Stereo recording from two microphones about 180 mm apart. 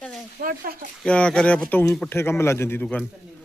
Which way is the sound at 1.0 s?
5° left (ahead or behind).